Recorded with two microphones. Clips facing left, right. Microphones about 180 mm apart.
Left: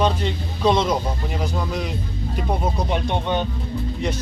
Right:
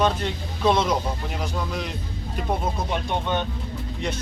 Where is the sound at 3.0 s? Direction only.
15° left (ahead or behind).